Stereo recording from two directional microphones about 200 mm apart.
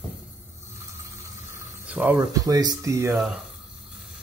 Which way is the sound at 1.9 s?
10° right (ahead or behind).